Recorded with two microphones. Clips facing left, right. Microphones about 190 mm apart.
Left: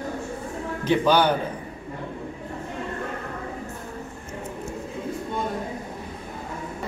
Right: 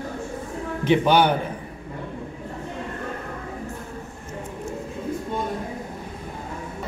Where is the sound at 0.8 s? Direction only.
20° right (ahead or behind).